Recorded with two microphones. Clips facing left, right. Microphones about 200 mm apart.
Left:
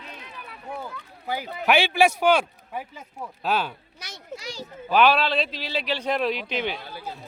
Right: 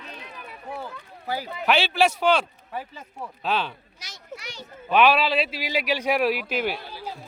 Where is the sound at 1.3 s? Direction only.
15° left (ahead or behind).